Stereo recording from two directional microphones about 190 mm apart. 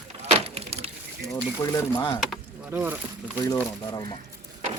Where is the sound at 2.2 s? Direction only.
5° right (ahead or behind).